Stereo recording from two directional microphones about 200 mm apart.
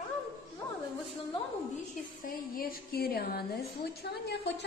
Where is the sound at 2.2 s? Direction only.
45° left (ahead or behind).